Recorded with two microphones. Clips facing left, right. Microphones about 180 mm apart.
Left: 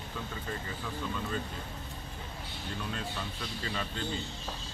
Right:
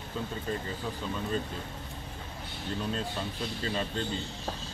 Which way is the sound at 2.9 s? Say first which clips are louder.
Right 4 dB; 30° right (ahead or behind).